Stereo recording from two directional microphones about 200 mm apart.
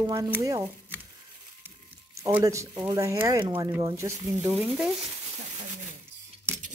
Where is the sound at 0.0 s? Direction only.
15° right (ahead or behind).